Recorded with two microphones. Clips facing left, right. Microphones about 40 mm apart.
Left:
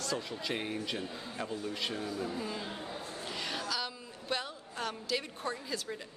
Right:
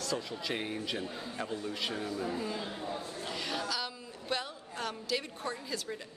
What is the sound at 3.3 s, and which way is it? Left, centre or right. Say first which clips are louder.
A woman's voice: right 1 dB; centre.